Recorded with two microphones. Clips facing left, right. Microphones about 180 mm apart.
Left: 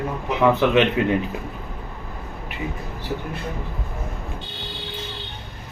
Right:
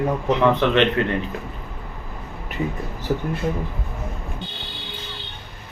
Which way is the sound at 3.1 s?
45° right (ahead or behind).